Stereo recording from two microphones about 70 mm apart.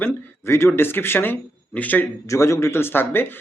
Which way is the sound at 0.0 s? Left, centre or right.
Left.